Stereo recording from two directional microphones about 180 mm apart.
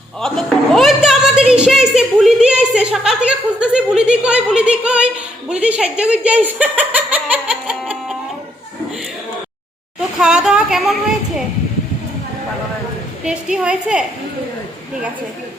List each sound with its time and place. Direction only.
0.2 s a sound: centre (ahead or behind)
5.5 s giggle: 5° right (ahead or behind)
10.2 s speech: 5° right (ahead or behind)
13.2 s speech: 5° right (ahead or behind)